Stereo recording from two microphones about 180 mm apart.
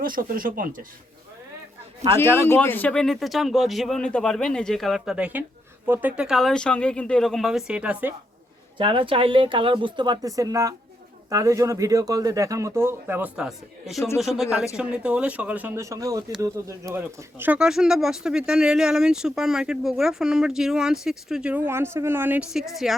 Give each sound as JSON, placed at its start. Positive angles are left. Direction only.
{"t": 0.0, "sound": "speech", "side_deg": -50}
{"t": 2.1, "sound": "speech", "side_deg": 15}
{"t": 8.8, "sound": "speech", "side_deg": -30}
{"t": 14.8, "sound": "speech", "side_deg": -5}